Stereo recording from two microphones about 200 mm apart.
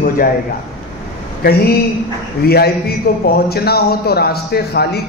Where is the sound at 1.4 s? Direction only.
50° left (ahead or behind).